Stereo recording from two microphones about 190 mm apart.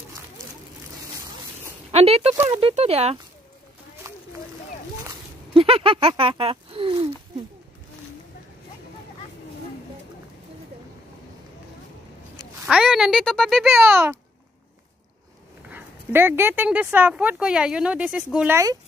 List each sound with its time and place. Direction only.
1.9 s speech: 30° right (ahead or behind)
4.1 s a sound: 15° right (ahead or behind)
5.5 s speech: 30° right (ahead or behind)
12.6 s speech: 5° right (ahead or behind)
15.7 s speech: 10° right (ahead or behind)